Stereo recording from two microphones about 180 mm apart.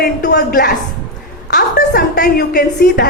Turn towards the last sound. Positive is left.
turn(degrees=60)  # may be behind; listen again after turning